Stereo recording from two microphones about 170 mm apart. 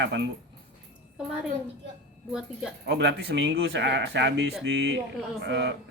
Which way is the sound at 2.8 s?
85° right.